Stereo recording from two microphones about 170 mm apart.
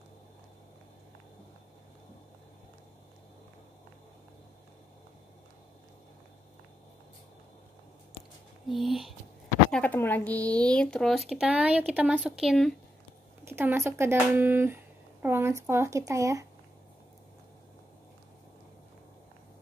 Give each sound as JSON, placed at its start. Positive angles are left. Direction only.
{"t": 8.6, "sound": "speech", "side_deg": 0}
{"t": 13.5, "sound": "speech", "side_deg": -15}